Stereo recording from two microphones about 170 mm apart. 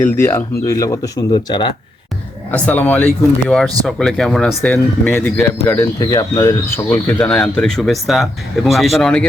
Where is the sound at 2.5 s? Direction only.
10° left (ahead or behind).